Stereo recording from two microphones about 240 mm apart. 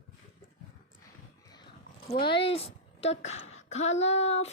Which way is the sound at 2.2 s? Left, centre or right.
Left.